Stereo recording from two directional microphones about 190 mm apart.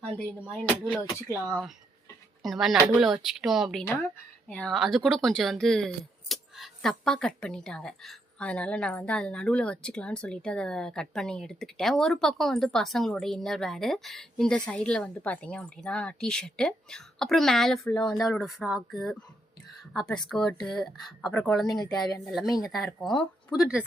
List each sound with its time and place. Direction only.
0.2 s speech: 10° left (ahead or behind)
2.4 s speech: centre (ahead or behind)
21.7 s speech: 20° left (ahead or behind)
22.3 s speech: centre (ahead or behind)